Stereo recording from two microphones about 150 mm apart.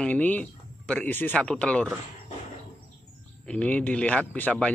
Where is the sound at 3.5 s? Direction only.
10° left (ahead or behind).